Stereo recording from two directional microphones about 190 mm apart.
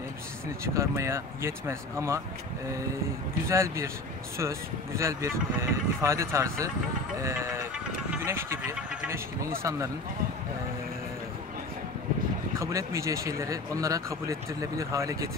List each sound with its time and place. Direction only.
0.7 s speech: 15° right (ahead or behind)
3.4 s speech: 15° right (ahead or behind)
12.5 s speech: 15° right (ahead or behind)